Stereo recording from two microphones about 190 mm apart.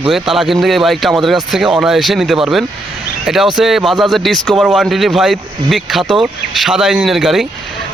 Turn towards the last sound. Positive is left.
turn(degrees=0)  # may be behind; listen again after turning